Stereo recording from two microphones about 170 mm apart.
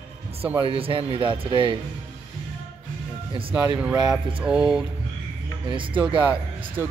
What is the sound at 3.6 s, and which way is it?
Speech, 10° right (ahead or behind).